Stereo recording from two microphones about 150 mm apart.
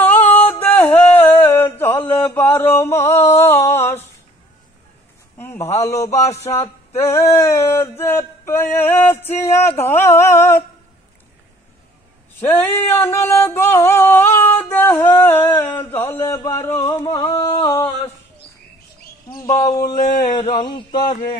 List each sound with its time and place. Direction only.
0.0 s a sound: 10° left (ahead or behind)
1.5 s mantra: 15° left (ahead or behind)
5.4 s a man's voice: 15° left (ahead or behind)
7.3 s music: 15° left (ahead or behind)
12.4 s singing: 15° left (ahead or behind)
15.9 s music: 15° left (ahead or behind)
17.4 s a sound: 25° left (ahead or behind)
19.3 s speech: 25° left (ahead or behind)
19.8 s speech: 55° left (ahead or behind)
20.9 s a man's voice: 70° left (ahead or behind)